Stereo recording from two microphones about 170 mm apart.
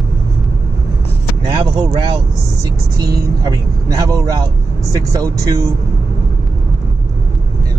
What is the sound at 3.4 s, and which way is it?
Speech, 20° right (ahead or behind).